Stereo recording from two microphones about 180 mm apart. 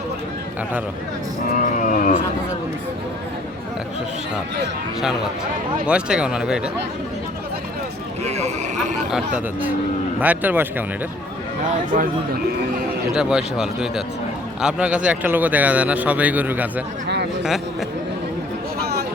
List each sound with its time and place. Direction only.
1.5 s a sound: 45° left (ahead or behind)
4.9 s a man's voice: centre (ahead or behind)
8.2 s speech: 40° right (ahead or behind)
9.0 s speech: 5° right (ahead or behind)
13.1 s a man's voice: 5° right (ahead or behind)